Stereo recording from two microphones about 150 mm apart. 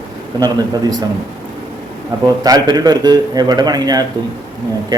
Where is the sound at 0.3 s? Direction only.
25° right (ahead or behind).